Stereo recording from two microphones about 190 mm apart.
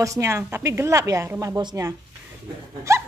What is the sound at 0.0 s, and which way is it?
A woman's voice, 15° right (ahead or behind).